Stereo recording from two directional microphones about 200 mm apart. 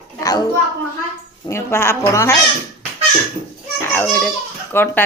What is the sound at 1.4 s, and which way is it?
Speech, 15° left (ahead or behind).